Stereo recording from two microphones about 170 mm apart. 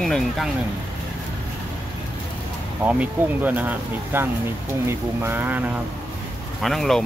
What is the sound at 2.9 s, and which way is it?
Speech, 10° right (ahead or behind).